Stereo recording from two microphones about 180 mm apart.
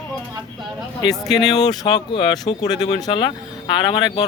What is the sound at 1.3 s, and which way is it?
Speech, 20° left (ahead or behind).